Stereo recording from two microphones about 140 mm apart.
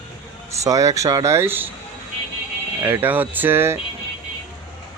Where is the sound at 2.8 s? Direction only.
15° right (ahead or behind).